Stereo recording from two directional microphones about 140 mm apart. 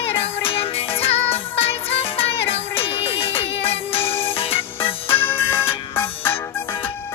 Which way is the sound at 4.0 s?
15° left (ahead or behind).